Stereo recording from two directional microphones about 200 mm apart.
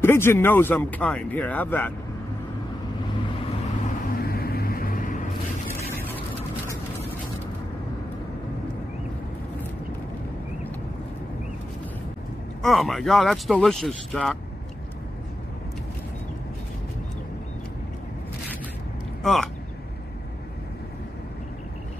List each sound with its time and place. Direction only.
0.0 s speech: 10° left (ahead or behind)
4.2 s vehicle: 50° left (ahead or behind)
12.6 s speech: centre (ahead or behind)
19.2 s speech: centre (ahead or behind)